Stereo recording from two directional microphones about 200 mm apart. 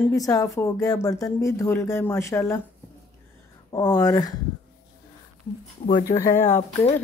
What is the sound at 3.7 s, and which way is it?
Speech, 20° left (ahead or behind).